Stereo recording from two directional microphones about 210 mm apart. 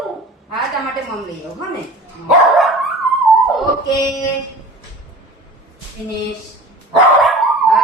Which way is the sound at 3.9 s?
15° left (ahead or behind).